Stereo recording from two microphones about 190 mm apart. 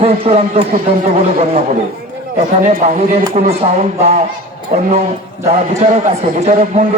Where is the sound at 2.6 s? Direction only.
35° right (ahead or behind).